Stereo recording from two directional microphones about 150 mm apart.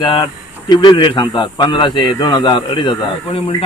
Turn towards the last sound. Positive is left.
turn(degrees=30)  # may be behind; listen again after turning